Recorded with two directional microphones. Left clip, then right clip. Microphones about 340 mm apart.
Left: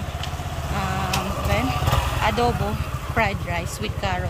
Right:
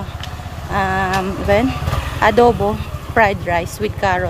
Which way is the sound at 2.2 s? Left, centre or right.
Centre.